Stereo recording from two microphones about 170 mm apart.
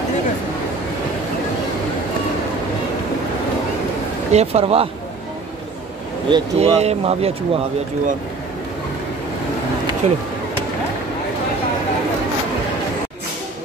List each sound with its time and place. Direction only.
4.3 s speech: 40° right (ahead or behind)
6.2 s speech: 35° right (ahead or behind)
10.0 s speech: 45° right (ahead or behind)